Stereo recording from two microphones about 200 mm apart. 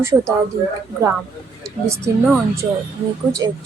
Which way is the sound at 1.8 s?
15° right (ahead or behind).